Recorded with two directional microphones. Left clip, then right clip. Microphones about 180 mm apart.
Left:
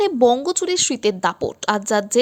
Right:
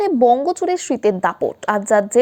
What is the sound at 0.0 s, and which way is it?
Speech, 45° left (ahead or behind).